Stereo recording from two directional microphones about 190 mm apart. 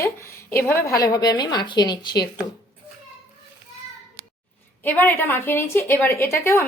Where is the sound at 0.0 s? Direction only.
15° left (ahead or behind).